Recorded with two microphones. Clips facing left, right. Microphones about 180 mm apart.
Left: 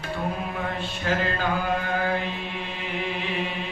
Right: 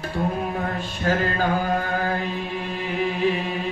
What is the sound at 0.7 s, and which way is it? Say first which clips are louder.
Mantra: right 3 dB; 40° right (ahead or behind).